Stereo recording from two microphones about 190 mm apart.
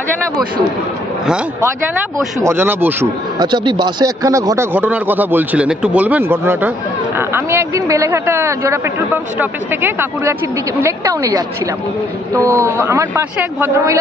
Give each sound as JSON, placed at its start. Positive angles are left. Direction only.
{"t": 2.4, "sound": "speech", "side_deg": -10}
{"t": 3.3, "sound": "speech", "side_deg": -25}